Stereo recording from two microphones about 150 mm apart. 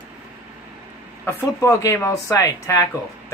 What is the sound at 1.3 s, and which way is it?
Speech, 20° left (ahead or behind).